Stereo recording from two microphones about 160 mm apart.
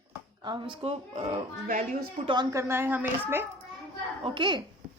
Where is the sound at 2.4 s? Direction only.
15° right (ahead or behind).